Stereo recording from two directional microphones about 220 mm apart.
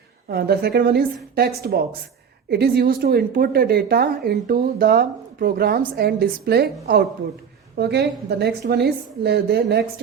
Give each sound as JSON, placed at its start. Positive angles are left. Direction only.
{"t": 0.3, "sound": "speech", "side_deg": -45}